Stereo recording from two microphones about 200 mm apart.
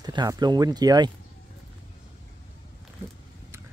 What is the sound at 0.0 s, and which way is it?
Speech, 20° right (ahead or behind).